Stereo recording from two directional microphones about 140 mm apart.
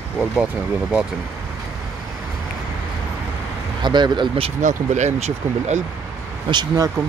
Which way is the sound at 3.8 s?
30° right (ahead or behind).